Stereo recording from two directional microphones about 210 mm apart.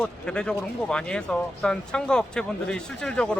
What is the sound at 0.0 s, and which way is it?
Speech, 5° left (ahead or behind).